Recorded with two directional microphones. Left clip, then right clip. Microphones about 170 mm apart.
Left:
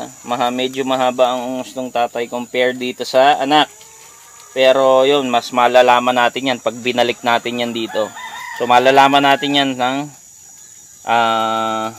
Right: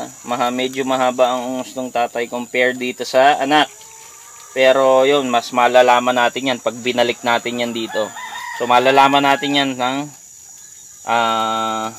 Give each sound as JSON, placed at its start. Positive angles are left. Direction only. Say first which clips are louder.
{"t": 0.0, "sound": "cricket", "louder": "left 1 dB", "side_deg": 10}
{"t": 0.7, "sound": "speech", "louder": "even", "side_deg": 15}
{"t": 11.1, "sound": "speech", "louder": "left 2 dB", "side_deg": 30}